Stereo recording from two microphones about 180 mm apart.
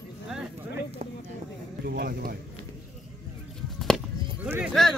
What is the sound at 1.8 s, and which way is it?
Speech, 55° right (ahead or behind).